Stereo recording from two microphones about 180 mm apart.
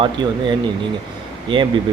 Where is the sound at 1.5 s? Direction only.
25° right (ahead or behind).